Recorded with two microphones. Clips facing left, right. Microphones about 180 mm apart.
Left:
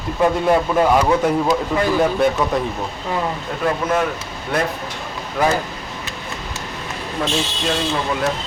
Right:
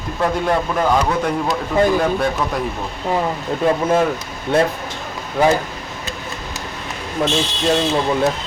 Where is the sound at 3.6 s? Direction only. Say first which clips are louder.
Right 3 dB; 20° right (ahead or behind).